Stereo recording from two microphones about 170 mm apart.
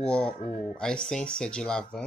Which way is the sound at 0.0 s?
5° left (ahead or behind).